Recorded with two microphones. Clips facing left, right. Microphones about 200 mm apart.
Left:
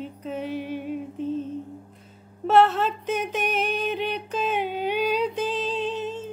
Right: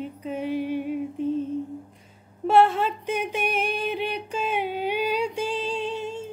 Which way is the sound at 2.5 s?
10° right (ahead or behind).